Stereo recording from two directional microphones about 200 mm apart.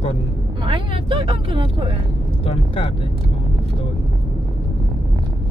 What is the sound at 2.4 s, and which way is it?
Vehicle, 30° left (ahead or behind).